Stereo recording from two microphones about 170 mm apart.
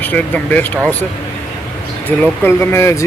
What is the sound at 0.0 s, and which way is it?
Speech, 10° left (ahead or behind).